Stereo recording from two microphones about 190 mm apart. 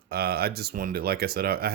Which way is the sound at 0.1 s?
55° right (ahead or behind).